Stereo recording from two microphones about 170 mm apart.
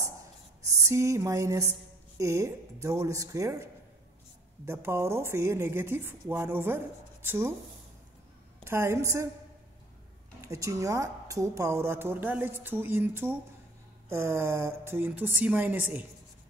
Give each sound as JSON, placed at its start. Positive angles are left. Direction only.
{"t": 0.7, "sound": "a sound", "side_deg": -20}
{"t": 2.1, "sound": "a woman's voice", "side_deg": -15}
{"t": 4.6, "sound": "a woman's voice", "side_deg": -15}
{"t": 8.6, "sound": "a woman's voice", "side_deg": -15}
{"t": 10.4, "sound": "a woman's voice", "side_deg": -15}